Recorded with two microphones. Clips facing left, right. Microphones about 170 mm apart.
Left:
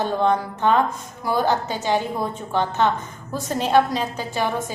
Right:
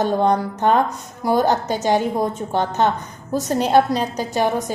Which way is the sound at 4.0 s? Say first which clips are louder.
Right 4 dB; 40° right (ahead or behind).